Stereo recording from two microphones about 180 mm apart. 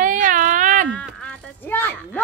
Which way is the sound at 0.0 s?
45° right (ahead or behind).